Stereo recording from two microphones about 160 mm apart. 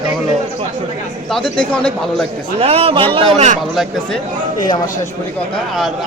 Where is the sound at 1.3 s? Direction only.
5° left (ahead or behind).